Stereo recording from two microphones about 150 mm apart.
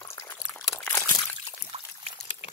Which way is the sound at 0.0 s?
20° left (ahead or behind).